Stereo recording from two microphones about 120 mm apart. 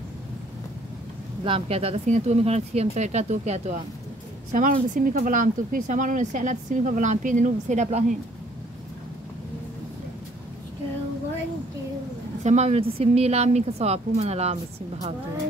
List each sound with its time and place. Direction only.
1.4 s a woman's voice: 50° right (ahead or behind)
2.0 s speech: 75° right (ahead or behind)
4.5 s speech: 90° right
12.4 s a woman's voice: 70° right (ahead or behind)